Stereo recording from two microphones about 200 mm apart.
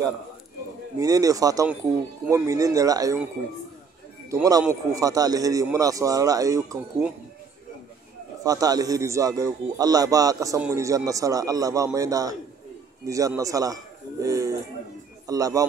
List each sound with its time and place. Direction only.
0.9 s a man's voice: 15° right (ahead or behind)
4.3 s a man's voice: 15° right (ahead or behind)
8.5 s a man's voice: 20° right (ahead or behind)